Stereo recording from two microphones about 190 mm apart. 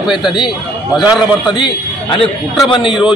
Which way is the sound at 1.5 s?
25° left (ahead or behind).